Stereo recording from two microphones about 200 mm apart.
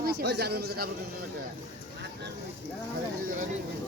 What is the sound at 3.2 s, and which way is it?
Speech, 40° right (ahead or behind).